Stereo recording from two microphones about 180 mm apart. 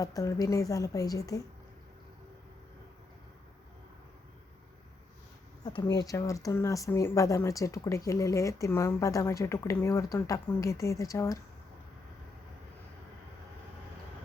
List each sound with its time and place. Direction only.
0.0 s a woman's voice: 20° left (ahead or behind)
5.6 s speech: 25° left (ahead or behind)